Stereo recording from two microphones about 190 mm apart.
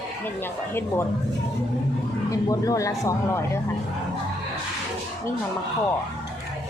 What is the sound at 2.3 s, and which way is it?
Speech, 15° left (ahead or behind).